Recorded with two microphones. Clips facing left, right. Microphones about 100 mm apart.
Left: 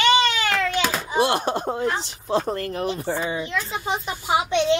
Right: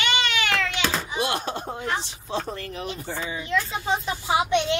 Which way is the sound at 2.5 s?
50° left (ahead or behind).